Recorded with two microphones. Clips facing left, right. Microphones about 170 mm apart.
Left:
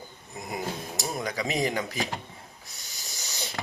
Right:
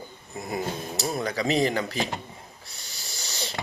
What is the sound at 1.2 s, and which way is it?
Speech, 15° left (ahead or behind).